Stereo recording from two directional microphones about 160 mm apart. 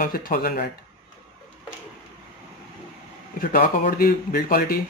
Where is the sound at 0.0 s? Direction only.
60° left (ahead or behind).